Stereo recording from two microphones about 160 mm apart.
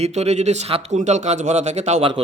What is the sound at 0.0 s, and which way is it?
A man's voice, 45° right (ahead or behind).